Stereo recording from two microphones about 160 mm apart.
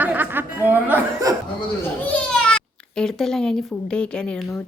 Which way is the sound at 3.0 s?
5° left (ahead or behind).